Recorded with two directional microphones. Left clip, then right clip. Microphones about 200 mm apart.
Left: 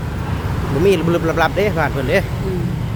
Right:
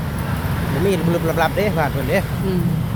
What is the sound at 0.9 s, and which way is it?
Speech, 20° left (ahead or behind).